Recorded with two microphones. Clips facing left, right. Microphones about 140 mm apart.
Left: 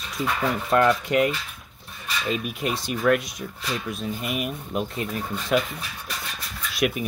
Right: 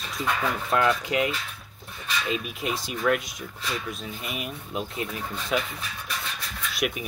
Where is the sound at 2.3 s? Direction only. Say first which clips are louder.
Left 2 dB; centre (ahead or behind).